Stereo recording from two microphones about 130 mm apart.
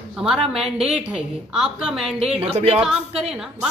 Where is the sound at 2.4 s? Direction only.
50° right (ahead or behind).